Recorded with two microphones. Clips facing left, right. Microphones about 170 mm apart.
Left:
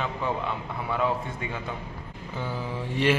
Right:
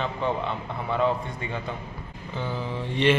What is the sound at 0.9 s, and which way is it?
Mantra, 5° left (ahead or behind).